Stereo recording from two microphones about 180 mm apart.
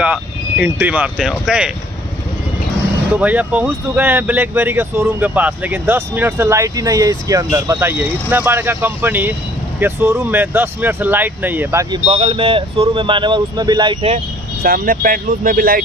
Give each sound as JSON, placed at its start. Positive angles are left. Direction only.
{"t": 0.0, "sound": "speech", "side_deg": -5}
{"t": 3.2, "sound": "speech", "side_deg": -10}
{"t": 12.1, "sound": "speech", "side_deg": -30}
{"t": 14.6, "sound": "speech", "side_deg": -55}